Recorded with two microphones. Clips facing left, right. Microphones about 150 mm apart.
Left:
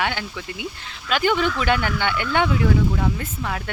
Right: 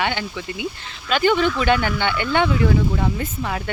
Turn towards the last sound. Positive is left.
turn(degrees=-5)  # may be behind; listen again after turning